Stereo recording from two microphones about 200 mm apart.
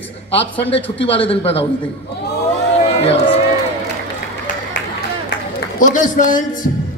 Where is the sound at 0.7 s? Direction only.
25° left (ahead or behind).